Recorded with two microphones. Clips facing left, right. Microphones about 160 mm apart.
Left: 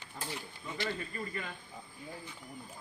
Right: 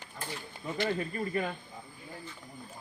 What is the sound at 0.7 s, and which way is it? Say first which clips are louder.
Speech: right 6 dB; 50° right (ahead or behind).